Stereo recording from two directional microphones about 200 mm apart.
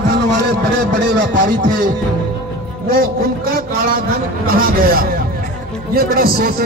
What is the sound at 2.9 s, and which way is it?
A man's voice, 45° right (ahead or behind).